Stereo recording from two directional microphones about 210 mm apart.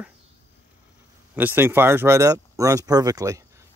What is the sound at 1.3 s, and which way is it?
Speech, 10° right (ahead or behind).